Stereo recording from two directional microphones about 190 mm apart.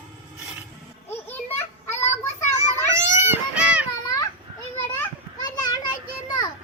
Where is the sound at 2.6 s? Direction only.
15° right (ahead or behind).